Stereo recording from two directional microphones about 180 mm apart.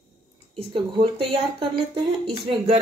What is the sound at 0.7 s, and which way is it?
Speech, 30° right (ahead or behind).